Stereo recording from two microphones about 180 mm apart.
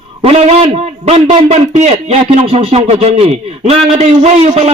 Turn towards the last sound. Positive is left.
turn(degrees=-35)  # may be behind; listen again after turning